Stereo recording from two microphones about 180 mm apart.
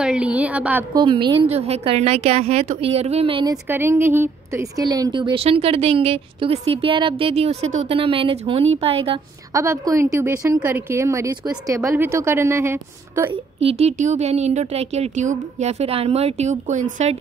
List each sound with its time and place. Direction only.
0.0 s a woman's voice: 5° right (ahead or behind)
0.9 s a woman's voice: 25° right (ahead or behind)
3.6 s a woman's voice: 10° right (ahead or behind); by 9.2 s 30° right (ahead or behind)
9.5 s a woman's voice: 15° right (ahead or behind)
13.3 s a woman's voice: 35° right (ahead or behind)